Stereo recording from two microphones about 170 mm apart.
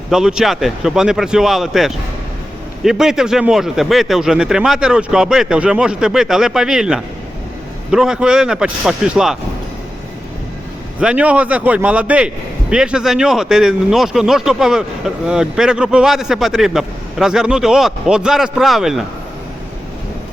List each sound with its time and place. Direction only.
0.1 s speech: 5° right (ahead or behind)
11.0 s a man's voice: 5° right (ahead or behind)